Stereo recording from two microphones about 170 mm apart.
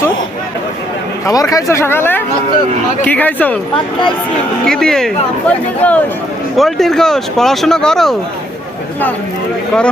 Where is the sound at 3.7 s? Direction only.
30° left (ahead or behind).